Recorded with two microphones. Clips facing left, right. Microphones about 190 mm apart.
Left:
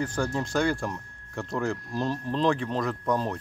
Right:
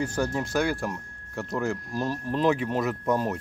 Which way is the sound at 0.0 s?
10° right (ahead or behind).